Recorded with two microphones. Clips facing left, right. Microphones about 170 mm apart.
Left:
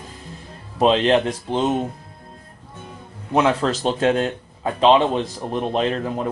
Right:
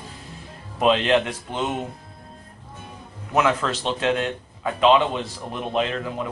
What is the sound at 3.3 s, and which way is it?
A man's voice, 35° left (ahead or behind).